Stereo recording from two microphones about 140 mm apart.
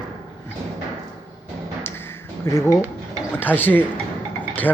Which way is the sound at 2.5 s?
20° left (ahead or behind).